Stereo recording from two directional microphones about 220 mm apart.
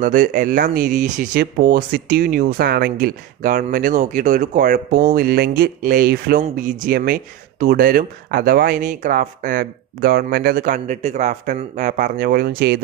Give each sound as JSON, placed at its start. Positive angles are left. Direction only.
{"t": 0.0, "sound": "speech", "side_deg": -35}